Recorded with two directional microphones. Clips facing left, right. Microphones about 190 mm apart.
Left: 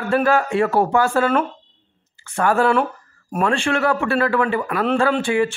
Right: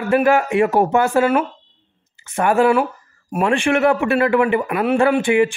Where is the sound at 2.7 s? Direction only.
5° right (ahead or behind).